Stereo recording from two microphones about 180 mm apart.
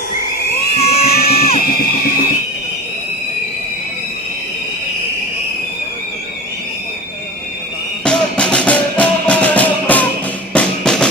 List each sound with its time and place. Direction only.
0.7 s music: 35° left (ahead or behind)
1.8 s music: 55° left (ahead or behind)
8.0 s music: 5° left (ahead or behind)